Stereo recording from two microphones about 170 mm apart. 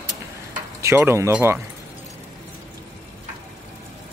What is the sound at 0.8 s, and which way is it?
Speech, 15° right (ahead or behind).